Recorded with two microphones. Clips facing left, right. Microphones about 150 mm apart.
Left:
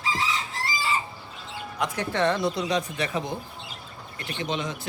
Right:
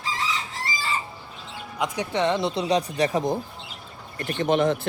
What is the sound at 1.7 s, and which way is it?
Speech, 15° right (ahead or behind).